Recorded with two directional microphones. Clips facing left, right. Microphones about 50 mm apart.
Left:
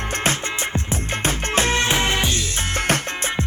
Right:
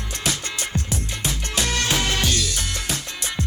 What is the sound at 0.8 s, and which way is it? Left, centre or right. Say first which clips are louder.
Music: left 5 dB; left.